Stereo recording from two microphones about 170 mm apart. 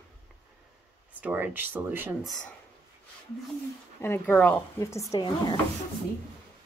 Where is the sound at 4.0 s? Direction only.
10° left (ahead or behind).